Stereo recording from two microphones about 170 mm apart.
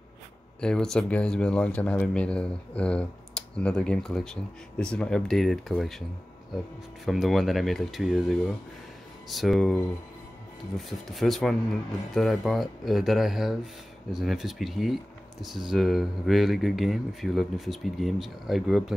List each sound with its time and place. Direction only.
0.6 s speech: 5° left (ahead or behind)
7.1 s speech: centre (ahead or behind)
10.9 s speech: centre (ahead or behind)